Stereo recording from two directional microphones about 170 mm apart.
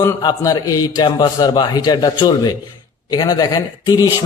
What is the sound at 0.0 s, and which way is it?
A man's voice, 20° left (ahead or behind).